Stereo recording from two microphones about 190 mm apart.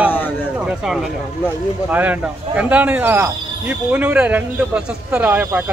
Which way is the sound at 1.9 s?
10° right (ahead or behind).